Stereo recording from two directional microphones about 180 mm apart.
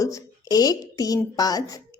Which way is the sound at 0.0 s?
20° left (ahead or behind).